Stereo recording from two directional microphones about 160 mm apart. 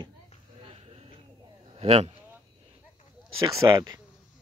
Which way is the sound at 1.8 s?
40° right (ahead or behind).